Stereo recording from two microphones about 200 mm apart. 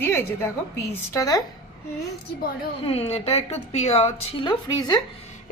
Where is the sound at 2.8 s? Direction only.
30° left (ahead or behind).